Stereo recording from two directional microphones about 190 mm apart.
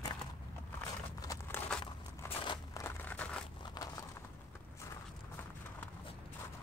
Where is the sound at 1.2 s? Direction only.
20° left (ahead or behind).